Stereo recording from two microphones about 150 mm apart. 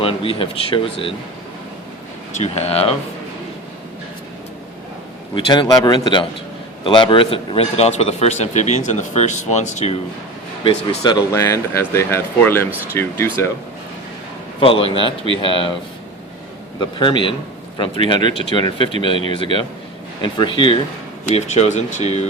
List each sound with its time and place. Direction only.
0.0 s speech: 35° left (ahead or behind)
2.3 s speech: 45° left (ahead or behind)
5.3 s speech: 30° left (ahead or behind); by 10.0 s 50° left (ahead or behind)
10.6 s speech: 30° left (ahead or behind)
14.6 s speech: 40° left (ahead or behind)
16.8 s speech: 35° left (ahead or behind)
21.2 s speech: 50° left (ahead or behind)